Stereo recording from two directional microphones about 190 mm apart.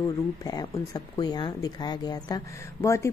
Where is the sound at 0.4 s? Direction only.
20° left (ahead or behind).